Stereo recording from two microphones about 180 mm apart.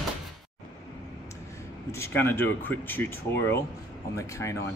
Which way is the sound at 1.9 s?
15° left (ahead or behind).